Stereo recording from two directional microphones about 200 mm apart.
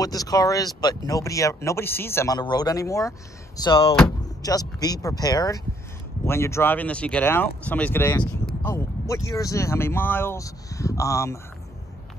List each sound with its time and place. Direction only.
0.0 s speech: 20° left (ahead or behind)